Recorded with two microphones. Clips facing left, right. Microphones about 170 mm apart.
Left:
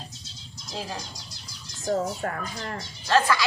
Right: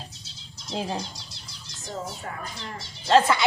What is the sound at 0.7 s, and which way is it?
Speech, 25° right (ahead or behind).